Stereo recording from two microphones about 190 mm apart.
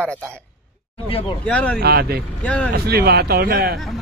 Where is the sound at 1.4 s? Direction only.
5° left (ahead or behind).